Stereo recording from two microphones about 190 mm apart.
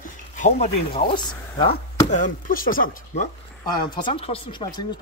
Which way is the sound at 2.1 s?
40° left (ahead or behind).